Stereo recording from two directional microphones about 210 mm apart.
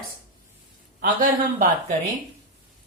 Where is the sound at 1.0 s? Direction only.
40° right (ahead or behind).